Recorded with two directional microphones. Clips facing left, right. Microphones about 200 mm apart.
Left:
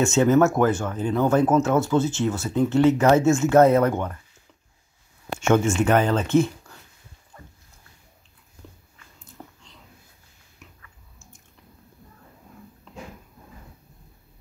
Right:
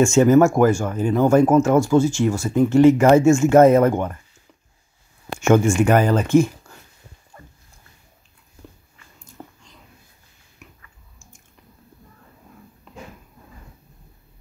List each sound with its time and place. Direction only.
0.0 s speech: 10° right (ahead or behind)
5.5 s speech: 10° right (ahead or behind)
9.4 s whispering: 15° right (ahead or behind)
10.6 s a sound: 10° right (ahead or behind)